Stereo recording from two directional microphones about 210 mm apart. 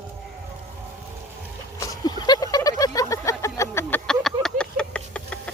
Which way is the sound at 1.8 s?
15° left (ahead or behind).